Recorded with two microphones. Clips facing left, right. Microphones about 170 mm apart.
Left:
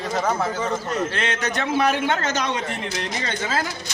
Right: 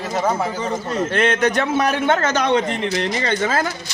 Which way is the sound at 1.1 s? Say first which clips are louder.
Right 8 dB; 55° right (ahead or behind).